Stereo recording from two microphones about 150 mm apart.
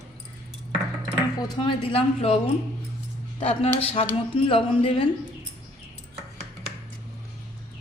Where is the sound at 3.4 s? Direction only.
40° left (ahead or behind).